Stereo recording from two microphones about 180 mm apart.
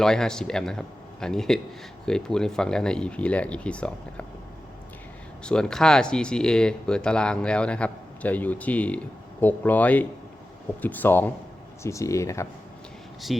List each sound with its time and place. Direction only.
0.0 s speech: 5° left (ahead or behind)
5.4 s speech: 5° left (ahead or behind)